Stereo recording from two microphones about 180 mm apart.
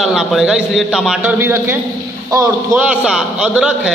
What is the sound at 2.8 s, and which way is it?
A man's voice, 5° right (ahead or behind).